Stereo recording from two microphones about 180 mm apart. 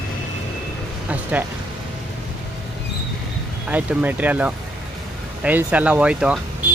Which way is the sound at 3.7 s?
10° right (ahead or behind).